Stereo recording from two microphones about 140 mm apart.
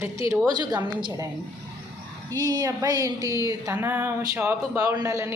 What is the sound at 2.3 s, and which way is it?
A woman's voice, 25° right (ahead or behind).